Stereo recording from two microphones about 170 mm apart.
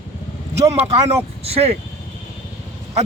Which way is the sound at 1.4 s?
35° right (ahead or behind).